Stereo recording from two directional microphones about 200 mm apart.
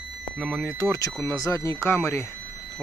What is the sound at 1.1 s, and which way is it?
Speech, 5° left (ahead or behind).